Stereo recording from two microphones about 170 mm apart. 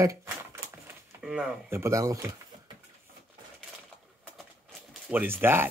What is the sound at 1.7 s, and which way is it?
Speech, 15° right (ahead or behind).